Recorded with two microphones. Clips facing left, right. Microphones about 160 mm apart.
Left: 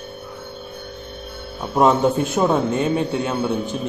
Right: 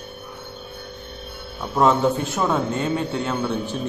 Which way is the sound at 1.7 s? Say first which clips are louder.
Left 2 dB; 20° left (ahead or behind).